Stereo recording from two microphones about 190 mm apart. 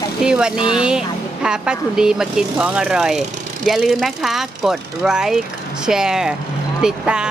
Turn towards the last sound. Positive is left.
turn(degrees=-5)  # may be behind; listen again after turning